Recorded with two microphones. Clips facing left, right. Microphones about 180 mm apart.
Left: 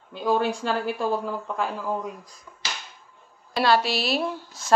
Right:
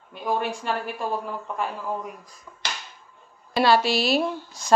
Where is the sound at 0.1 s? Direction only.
90° left.